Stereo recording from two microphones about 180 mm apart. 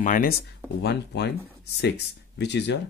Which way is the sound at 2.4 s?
75° left (ahead or behind).